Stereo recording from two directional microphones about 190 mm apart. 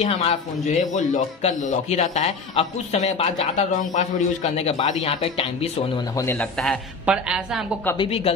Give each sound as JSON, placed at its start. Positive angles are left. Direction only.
{"t": 0.0, "sound": "a man's voice", "side_deg": 35}
{"t": 6.6, "sound": "a woman's voice", "side_deg": 0}
{"t": 8.0, "sound": "a man's voice", "side_deg": 30}